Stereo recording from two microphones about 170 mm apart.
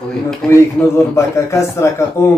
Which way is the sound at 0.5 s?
15° left (ahead or behind).